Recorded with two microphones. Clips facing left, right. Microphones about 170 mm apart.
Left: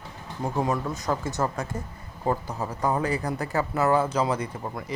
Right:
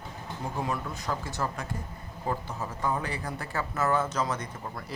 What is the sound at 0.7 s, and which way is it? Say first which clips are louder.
Speech: left 6 dB; 45° left (ahead or behind).